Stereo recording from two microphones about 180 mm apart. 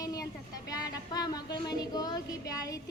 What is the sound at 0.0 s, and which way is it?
Vehicle, 20° left (ahead or behind).